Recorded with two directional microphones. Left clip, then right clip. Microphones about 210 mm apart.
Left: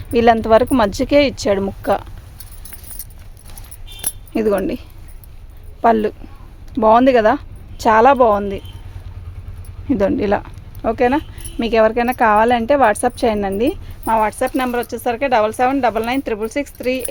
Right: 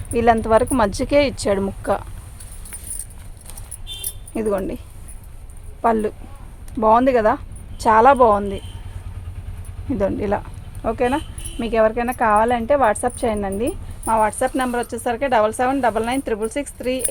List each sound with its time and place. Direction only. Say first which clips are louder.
0.1 s speech: left 4 dB; 40° left (ahead or behind)
4.4 s speech: left 5 dB; 45° left (ahead or behind)
5.8 s speech: left 4 dB; 40° left (ahead or behind)
9.9 s speech: left 5 dB; 40° left (ahead or behind)